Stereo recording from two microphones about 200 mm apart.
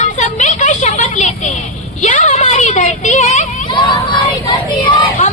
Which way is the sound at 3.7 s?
25° left (ahead or behind).